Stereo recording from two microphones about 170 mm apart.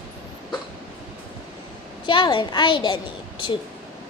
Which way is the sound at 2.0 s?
30° left (ahead or behind).